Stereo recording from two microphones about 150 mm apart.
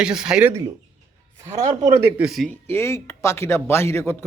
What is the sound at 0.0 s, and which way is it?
Speech, 5° right (ahead or behind).